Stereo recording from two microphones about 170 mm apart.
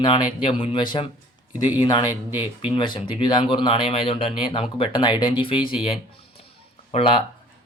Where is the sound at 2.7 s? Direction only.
30° left (ahead or behind).